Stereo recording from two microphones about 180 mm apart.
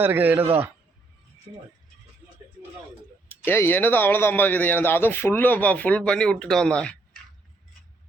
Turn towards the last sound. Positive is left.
turn(degrees=5)  # may be behind; listen again after turning